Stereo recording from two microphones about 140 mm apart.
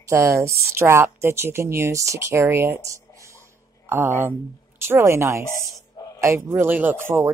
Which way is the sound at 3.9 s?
15° right (ahead or behind).